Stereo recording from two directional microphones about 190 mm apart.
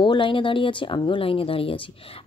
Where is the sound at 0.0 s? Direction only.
25° left (ahead or behind).